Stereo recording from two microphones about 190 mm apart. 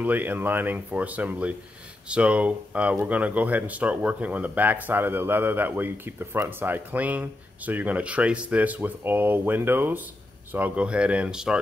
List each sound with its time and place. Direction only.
0.0 s speech: 10° right (ahead or behind)